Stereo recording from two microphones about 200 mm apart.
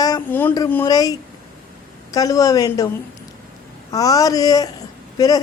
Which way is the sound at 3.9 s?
20° left (ahead or behind).